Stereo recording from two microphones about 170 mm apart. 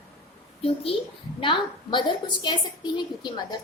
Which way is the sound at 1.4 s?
30° left (ahead or behind).